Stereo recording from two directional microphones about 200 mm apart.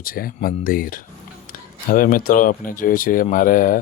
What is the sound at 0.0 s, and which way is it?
Speech, 45° left (ahead or behind).